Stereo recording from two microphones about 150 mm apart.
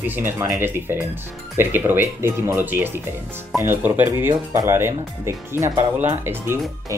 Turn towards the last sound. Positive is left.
turn(degrees=-15)  # may be behind; listen again after turning